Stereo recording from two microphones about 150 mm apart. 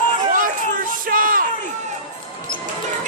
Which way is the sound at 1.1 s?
70° right (ahead or behind).